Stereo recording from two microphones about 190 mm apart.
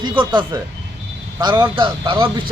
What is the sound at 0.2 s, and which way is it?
Speech, 25° right (ahead or behind).